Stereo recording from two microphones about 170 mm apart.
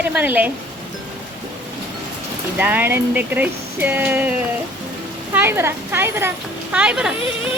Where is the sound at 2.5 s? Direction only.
10° right (ahead or behind).